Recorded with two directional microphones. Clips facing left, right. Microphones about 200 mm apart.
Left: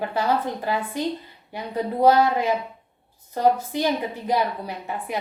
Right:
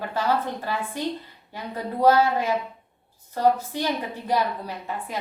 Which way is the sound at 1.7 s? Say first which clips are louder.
Left 2 dB; 15° left (ahead or behind).